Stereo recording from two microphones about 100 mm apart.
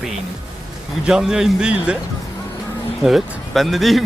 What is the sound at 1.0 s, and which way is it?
Speech, 5° right (ahead or behind).